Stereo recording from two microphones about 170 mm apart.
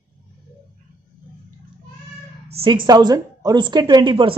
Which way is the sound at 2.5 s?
30° right (ahead or behind).